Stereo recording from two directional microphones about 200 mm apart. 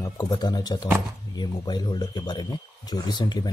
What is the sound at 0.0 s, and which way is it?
Speech, 20° left (ahead or behind).